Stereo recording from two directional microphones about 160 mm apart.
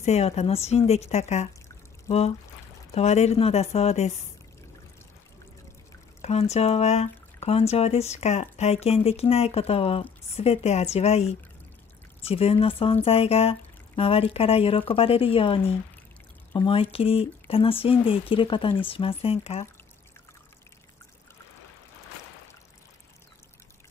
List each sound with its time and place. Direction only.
0.0 s speech: 40° left (ahead or behind)
6.2 s speech: 45° left (ahead or behind)